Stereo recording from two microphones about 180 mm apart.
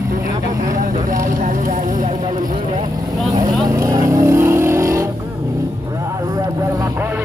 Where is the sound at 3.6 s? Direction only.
20° right (ahead or behind).